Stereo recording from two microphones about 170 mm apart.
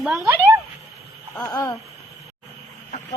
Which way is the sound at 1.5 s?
20° left (ahead or behind).